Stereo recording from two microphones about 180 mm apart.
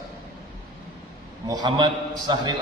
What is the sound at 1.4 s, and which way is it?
A man's voice, 25° right (ahead or behind).